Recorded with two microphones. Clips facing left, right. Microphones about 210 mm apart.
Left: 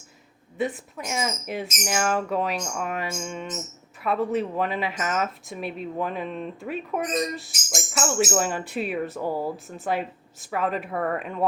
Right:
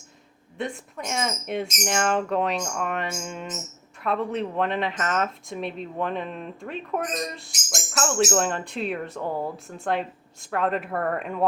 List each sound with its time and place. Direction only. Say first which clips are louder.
0.6 s speech: left 3 dB; 5° left (ahead or behind)